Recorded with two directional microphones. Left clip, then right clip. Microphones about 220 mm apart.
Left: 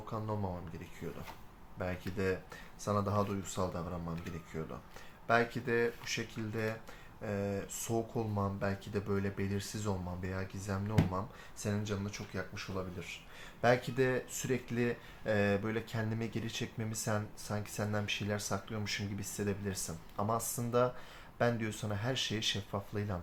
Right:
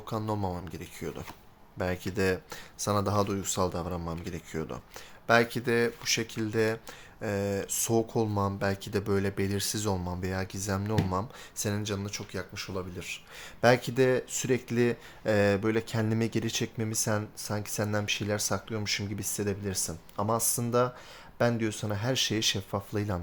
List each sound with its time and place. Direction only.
0.0 s speech: 50° right (ahead or behind)